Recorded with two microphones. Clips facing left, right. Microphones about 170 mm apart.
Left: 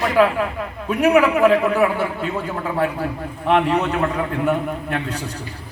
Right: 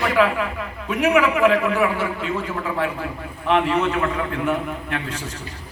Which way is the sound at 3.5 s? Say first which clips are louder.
Left 1 dB; 35° left (ahead or behind).